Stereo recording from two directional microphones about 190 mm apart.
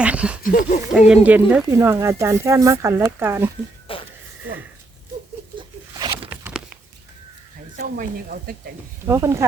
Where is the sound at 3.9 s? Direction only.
30° left (ahead or behind).